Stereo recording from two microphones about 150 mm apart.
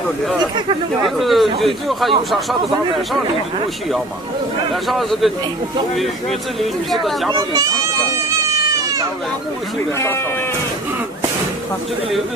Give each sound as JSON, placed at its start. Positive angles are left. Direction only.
{"t": 1.0, "sound": "speech", "side_deg": 0}
{"t": 4.8, "sound": "speech", "side_deg": 0}
{"t": 7.2, "sound": "speech", "side_deg": -25}
{"t": 9.9, "sound": "speech", "side_deg": 15}